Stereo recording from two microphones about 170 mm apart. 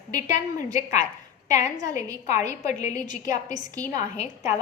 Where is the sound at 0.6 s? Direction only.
45° left (ahead or behind).